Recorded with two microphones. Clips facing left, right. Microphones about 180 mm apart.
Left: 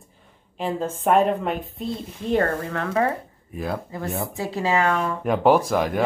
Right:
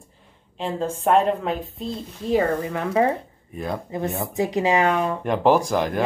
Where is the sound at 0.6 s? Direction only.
Centre (ahead or behind); by 3.2 s 20° right (ahead or behind).